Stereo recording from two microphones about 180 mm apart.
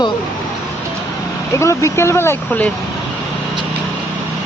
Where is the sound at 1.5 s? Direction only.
15° left (ahead or behind).